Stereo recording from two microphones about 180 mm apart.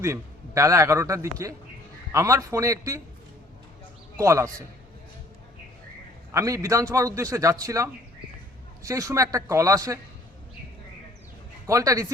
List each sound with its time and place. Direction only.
0.0 s a man's voice: 15° right (ahead or behind)
4.2 s a man's voice: 15° right (ahead or behind)
6.3 s a man's voice: 20° right (ahead or behind)
11.6 s a man's voice: 20° right (ahead or behind)